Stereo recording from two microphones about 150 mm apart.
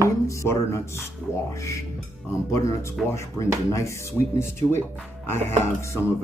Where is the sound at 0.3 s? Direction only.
20° left (ahead or behind).